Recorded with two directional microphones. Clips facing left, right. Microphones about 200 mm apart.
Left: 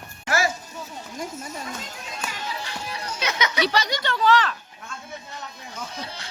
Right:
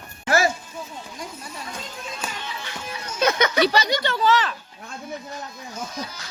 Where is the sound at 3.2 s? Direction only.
55° right (ahead or behind).